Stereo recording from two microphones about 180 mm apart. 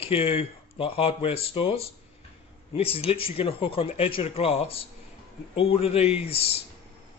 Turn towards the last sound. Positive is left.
turn(degrees=35)  # may be behind; listen again after turning